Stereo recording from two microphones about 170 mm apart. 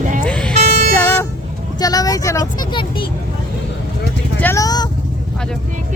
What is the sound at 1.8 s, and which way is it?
Vehicle, 20° left (ahead or behind).